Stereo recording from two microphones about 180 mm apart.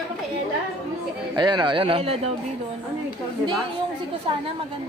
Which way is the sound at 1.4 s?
25° right (ahead or behind).